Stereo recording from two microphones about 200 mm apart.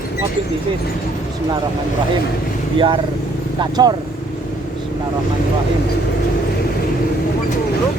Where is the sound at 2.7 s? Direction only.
25° right (ahead or behind).